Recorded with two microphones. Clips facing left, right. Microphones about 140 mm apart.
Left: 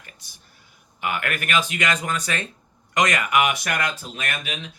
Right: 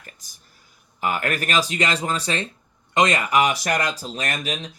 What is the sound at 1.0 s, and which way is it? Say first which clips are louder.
Speech: right 3 dB; 35° right (ahead or behind).